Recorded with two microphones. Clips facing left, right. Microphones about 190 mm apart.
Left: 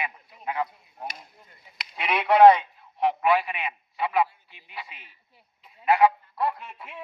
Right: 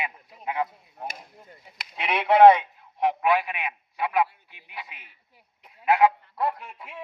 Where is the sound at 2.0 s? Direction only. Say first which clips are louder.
Even; 15° right (ahead or behind).